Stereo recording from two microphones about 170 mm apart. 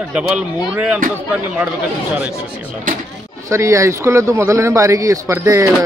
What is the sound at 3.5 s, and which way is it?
Speech, 15° right (ahead or behind).